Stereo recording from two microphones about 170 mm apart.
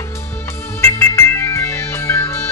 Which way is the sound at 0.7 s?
15° left (ahead or behind).